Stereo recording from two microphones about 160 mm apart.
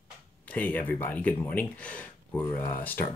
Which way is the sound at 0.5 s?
10° left (ahead or behind).